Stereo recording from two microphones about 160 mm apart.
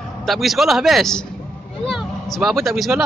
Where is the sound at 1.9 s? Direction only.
Centre (ahead or behind).